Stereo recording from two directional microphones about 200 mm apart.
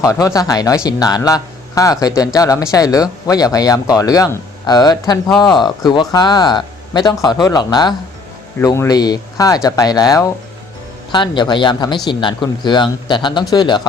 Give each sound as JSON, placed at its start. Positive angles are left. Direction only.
{"t": 0.0, "sound": "speech", "side_deg": 15}